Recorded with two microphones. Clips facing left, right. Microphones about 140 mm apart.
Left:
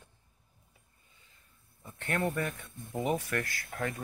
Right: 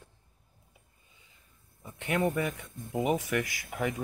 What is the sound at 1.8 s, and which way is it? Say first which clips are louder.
Speech: right 3 dB; 10° right (ahead or behind).